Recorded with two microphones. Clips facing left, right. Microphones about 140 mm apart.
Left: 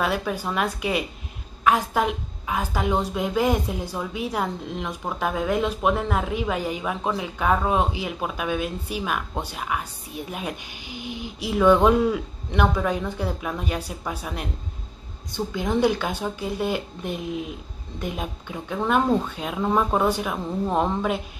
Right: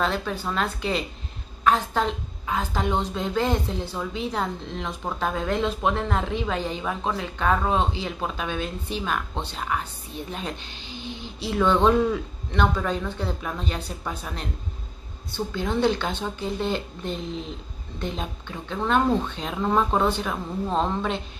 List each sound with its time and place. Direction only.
0.0 s a woman's voice: 10° left (ahead or behind)